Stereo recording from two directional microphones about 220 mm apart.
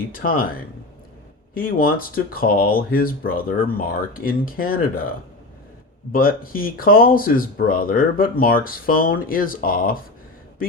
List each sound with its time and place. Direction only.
0.0 s speech: 40° left (ahead or behind)
6.1 s speech: 40° left (ahead or behind)